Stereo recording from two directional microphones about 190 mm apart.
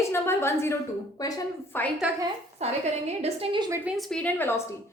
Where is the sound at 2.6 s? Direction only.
35° right (ahead or behind).